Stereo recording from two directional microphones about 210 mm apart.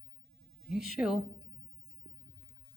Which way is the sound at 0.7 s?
Centre (ahead or behind).